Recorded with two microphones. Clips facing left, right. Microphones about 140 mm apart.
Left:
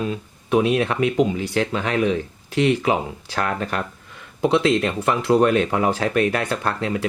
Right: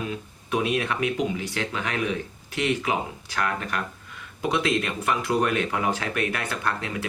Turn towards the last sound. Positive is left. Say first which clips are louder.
# left 6 dB
turn(degrees=30)  # may be behind; listen again after turning